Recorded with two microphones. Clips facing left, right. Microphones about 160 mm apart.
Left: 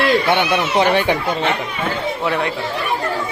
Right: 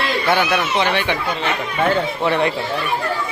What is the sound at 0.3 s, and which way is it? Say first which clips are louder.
Speech: left 1 dB; 25° left (ahead or behind).